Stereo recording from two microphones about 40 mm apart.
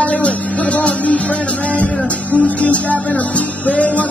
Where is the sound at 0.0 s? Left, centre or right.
Left.